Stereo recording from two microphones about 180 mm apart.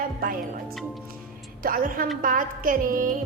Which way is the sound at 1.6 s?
50° right (ahead or behind).